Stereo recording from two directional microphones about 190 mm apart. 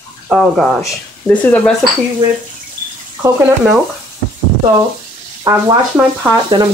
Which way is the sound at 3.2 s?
15° right (ahead or behind).